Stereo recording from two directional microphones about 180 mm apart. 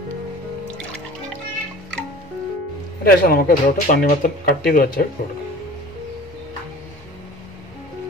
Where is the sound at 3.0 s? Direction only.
55° left (ahead or behind).